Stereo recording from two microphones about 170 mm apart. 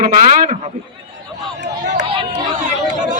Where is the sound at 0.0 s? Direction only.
50° right (ahead or behind).